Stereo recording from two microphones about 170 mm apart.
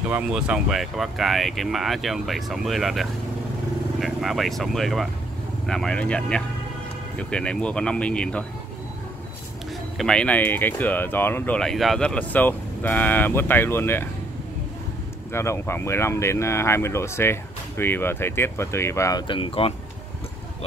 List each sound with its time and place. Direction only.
0.1 s speech: 5° right (ahead or behind)
9.9 s speech: 5° left (ahead or behind)
15.3 s speech: 15° left (ahead or behind)
19.2 s speech: 30° left (ahead or behind)